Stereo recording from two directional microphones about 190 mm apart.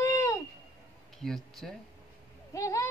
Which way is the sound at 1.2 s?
Centre (ahead or behind).